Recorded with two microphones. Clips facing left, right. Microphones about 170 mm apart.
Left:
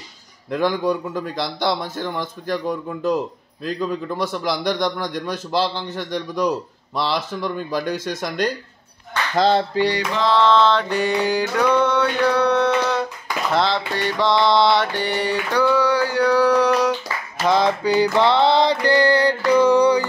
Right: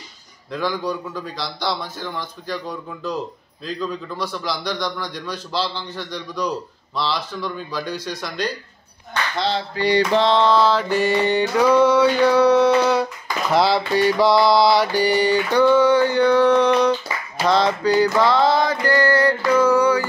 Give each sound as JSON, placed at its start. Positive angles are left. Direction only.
{"t": 0.5, "sound": "a man's voice", "side_deg": 50}
{"t": 9.9, "sound": "mantra", "side_deg": -30}
{"t": 10.4, "sound": "mantra", "side_deg": -10}
{"t": 17.8, "sound": "mantra", "side_deg": 20}